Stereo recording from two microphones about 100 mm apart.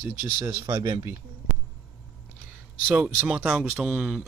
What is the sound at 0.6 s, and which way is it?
Speech, 45° right (ahead or behind).